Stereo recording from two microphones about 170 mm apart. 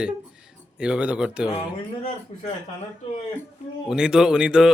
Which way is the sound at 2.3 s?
35° left (ahead or behind).